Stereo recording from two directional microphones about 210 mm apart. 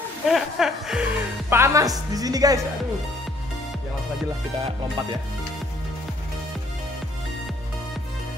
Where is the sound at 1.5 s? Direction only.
15° right (ahead or behind).